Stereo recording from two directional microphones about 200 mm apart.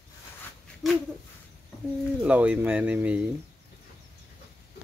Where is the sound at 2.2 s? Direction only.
5° right (ahead or behind).